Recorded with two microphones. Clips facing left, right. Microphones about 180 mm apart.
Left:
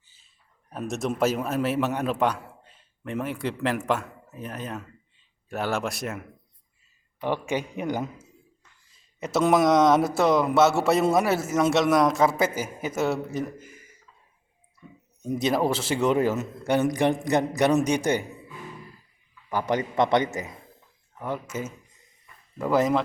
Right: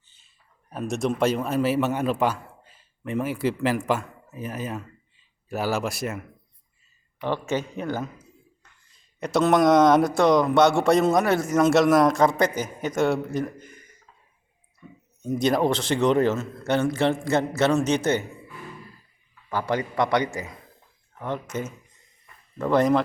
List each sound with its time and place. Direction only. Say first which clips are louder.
0.7 s a man's voice: right 3 dB; centre (ahead or behind)
7.2 s a man's voice: right 1 dB; 15° left (ahead or behind)
8.9 s speech: right 2 dB; 5° left (ahead or behind)
15.2 s a man's voice: right 2 dB; 5° left (ahead or behind)
19.5 s a man's voice: even; 20° left (ahead or behind)
21.2 s a man's voice: right 1 dB; 10° left (ahead or behind)